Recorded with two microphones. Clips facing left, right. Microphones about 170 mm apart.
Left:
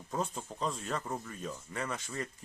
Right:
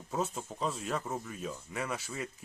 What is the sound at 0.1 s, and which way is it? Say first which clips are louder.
Speech: right 1 dB; 5° right (ahead or behind).